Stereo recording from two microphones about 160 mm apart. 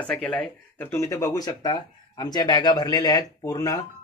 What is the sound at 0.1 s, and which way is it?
Speech, 5° left (ahead or behind).